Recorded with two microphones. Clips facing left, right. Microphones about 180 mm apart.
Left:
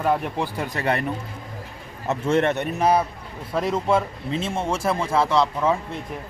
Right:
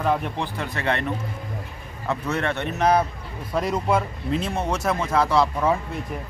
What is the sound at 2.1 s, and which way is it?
A man's voice, 25° left (ahead or behind).